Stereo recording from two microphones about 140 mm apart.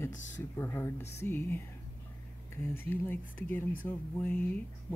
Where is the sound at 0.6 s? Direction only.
15° left (ahead or behind).